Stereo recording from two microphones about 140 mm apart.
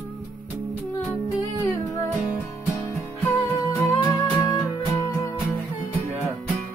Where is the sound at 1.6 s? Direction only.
25° left (ahead or behind).